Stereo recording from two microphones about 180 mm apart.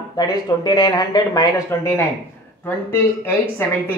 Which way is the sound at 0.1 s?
20° left (ahead or behind).